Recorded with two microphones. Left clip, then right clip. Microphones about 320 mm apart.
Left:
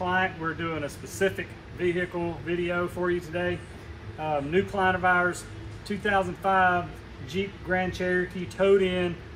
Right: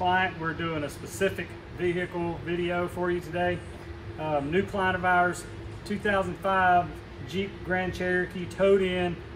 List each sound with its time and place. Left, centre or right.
0.0 s speech: centre